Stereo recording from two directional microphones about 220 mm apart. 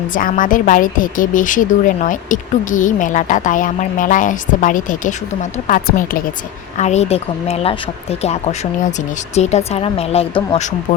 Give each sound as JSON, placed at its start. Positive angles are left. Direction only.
{"t": 0.1, "sound": "a woman's voice", "side_deg": 40}